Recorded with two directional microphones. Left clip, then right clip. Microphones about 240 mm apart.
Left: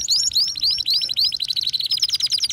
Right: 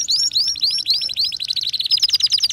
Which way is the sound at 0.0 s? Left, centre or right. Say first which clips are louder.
Right 1 dB; centre.